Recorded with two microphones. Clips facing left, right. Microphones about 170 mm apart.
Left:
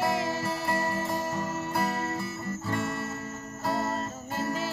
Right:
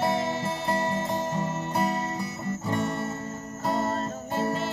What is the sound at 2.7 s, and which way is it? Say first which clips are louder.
Guitar: right 3 dB; 20° right (ahead or behind).